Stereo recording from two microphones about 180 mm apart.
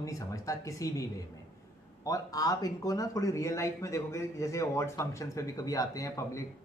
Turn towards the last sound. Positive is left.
turn(degrees=15)  # may be behind; listen again after turning